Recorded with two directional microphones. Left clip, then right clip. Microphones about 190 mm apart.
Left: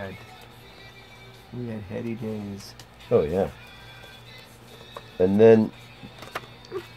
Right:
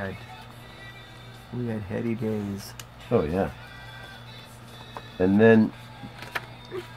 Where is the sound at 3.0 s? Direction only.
20° left (ahead or behind).